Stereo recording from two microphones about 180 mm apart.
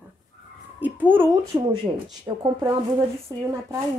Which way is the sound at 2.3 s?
20° right (ahead or behind).